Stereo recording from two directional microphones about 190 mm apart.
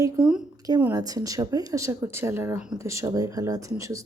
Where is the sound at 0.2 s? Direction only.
5° right (ahead or behind).